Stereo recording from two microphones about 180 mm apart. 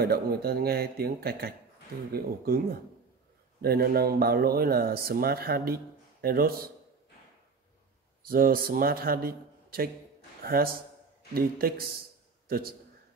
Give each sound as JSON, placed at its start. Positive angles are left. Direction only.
{"t": 0.0, "sound": "speech", "side_deg": -60}
{"t": 8.3, "sound": "a man's voice", "side_deg": -55}